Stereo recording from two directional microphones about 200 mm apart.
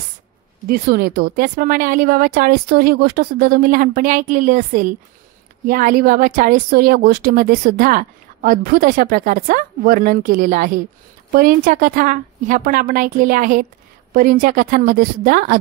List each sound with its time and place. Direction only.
0.7 s speech: 50° right (ahead or behind)